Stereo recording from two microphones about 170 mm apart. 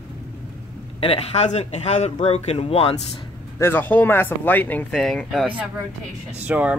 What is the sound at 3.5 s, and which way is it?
Speech, 15° left (ahead or behind).